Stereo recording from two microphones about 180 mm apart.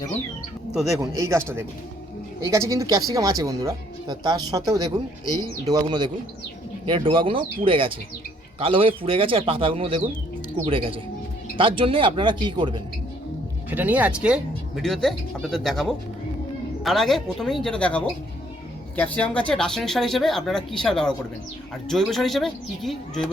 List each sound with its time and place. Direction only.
0.9 s speech: 15° right (ahead or behind)
13.7 s speech: 10° right (ahead or behind)